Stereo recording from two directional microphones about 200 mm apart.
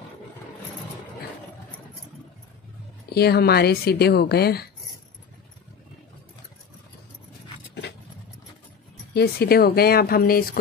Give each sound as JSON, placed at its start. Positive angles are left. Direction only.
{"t": 3.1, "sound": "speech", "side_deg": 55}
{"t": 9.1, "sound": "speech", "side_deg": 50}